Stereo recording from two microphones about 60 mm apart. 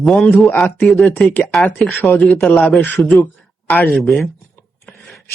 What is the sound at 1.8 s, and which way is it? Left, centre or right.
Speech, centre.